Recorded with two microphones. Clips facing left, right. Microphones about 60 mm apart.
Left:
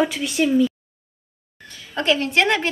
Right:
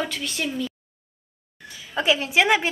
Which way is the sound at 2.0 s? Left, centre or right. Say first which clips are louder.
Left 1 dB; centre.